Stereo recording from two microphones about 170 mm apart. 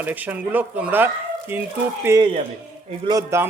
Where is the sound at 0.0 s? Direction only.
10° right (ahead or behind).